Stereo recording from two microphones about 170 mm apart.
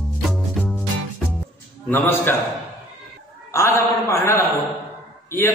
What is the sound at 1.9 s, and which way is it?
Speech, 15° left (ahead or behind).